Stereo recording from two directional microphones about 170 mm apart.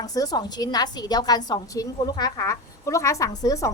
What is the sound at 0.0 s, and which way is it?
A woman's voice, 20° left (ahead or behind).